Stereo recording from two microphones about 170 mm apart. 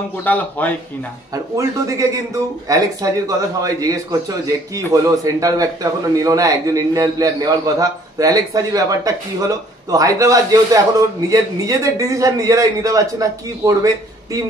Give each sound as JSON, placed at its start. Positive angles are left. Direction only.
{"t": 0.2, "sound": "speech", "side_deg": 10}
{"t": 1.3, "sound": "a man's voice", "side_deg": -20}